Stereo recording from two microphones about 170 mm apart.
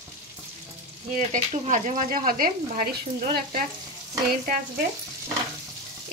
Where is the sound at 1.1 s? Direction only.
45° right (ahead or behind).